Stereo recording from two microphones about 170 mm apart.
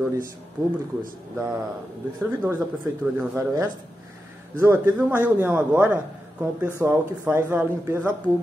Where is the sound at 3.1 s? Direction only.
15° right (ahead or behind).